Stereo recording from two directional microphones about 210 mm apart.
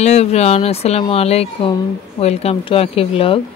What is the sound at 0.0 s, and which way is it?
Speech, 30° left (ahead or behind).